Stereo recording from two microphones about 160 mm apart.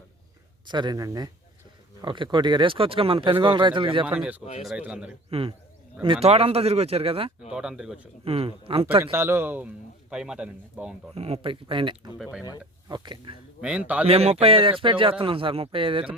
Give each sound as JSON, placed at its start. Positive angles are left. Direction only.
{"t": 0.7, "sound": "speech", "side_deg": -25}
{"t": 4.0, "sound": "speech", "side_deg": -10}
{"t": 5.3, "sound": "speech", "side_deg": -35}
{"t": 7.5, "sound": "speech", "side_deg": -5}
{"t": 8.2, "sound": "speech", "side_deg": -35}
{"t": 9.1, "sound": "speech", "side_deg": -15}
{"t": 11.1, "sound": "speech", "side_deg": -40}
{"t": 13.6, "sound": "speech", "side_deg": -5}
{"t": 14.1, "sound": "speech", "side_deg": -40}